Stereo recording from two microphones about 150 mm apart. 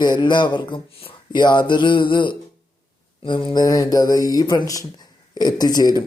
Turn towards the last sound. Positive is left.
turn(degrees=25)  # may be behind; listen again after turning